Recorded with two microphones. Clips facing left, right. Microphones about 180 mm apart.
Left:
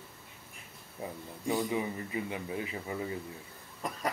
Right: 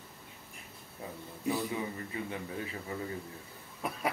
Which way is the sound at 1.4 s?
20° left (ahead or behind).